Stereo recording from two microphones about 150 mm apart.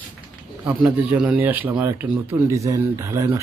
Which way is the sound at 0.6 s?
10° right (ahead or behind).